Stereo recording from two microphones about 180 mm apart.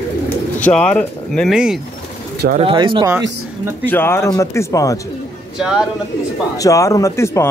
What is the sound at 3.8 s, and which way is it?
Speech, 10° left (ahead or behind).